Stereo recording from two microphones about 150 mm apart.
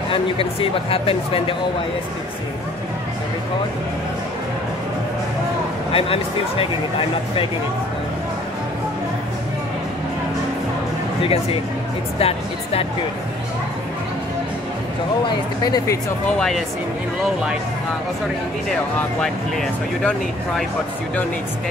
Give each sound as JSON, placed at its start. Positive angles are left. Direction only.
{"t": 0.1, "sound": "speech", "side_deg": 40}
{"t": 5.9, "sound": "speech", "side_deg": 40}
{"t": 12.2, "sound": "speech", "side_deg": 40}
{"t": 15.2, "sound": "speech", "side_deg": 25}
{"t": 16.3, "sound": "speech", "side_deg": 0}
{"t": 19.2, "sound": "speech", "side_deg": 5}